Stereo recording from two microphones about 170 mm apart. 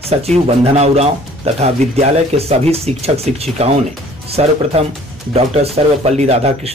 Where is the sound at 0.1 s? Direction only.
40° right (ahead or behind).